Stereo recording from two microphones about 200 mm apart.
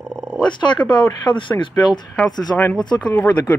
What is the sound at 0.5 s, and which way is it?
Speech, 25° left (ahead or behind).